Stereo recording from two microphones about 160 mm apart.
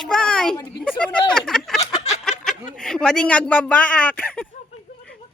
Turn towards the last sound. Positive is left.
turn(degrees=5)  # may be behind; listen again after turning